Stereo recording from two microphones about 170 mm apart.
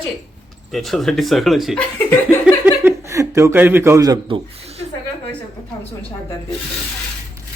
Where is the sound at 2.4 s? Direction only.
10° right (ahead or behind); by 4.7 s 30° right (ahead or behind).